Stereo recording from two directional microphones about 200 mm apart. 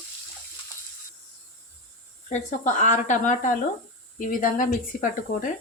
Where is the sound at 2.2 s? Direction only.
35° left (ahead or behind).